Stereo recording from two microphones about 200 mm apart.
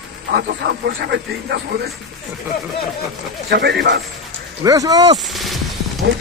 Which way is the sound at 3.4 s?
55° right (ahead or behind).